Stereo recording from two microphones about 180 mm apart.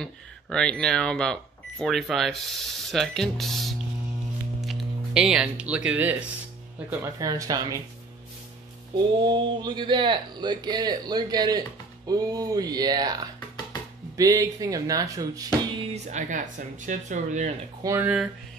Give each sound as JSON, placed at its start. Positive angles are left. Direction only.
{"t": 0.0, "sound": "speech", "side_deg": 5}
{"t": 6.9, "sound": "speech", "side_deg": -20}
{"t": 9.2, "sound": "speech", "side_deg": -25}
{"t": 15.8, "sound": "speech", "side_deg": -40}
{"t": 17.8, "sound": "speech", "side_deg": -10}